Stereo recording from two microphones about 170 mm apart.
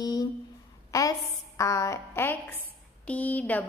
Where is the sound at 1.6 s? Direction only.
20° left (ahead or behind).